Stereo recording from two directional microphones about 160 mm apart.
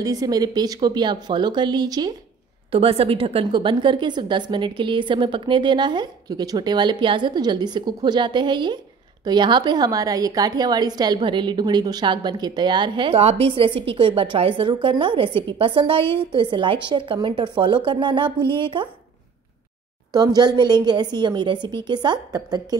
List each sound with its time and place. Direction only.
0.0 s a woman's voice: 20° right (ahead or behind)
2.7 s a woman's voice: 35° right (ahead or behind)
20.1 s a woman's voice: 25° right (ahead or behind)